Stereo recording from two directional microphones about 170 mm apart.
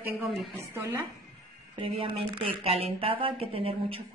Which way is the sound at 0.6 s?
15° right (ahead or behind).